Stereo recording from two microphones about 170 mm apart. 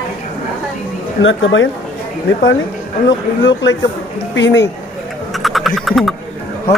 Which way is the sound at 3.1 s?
90° left.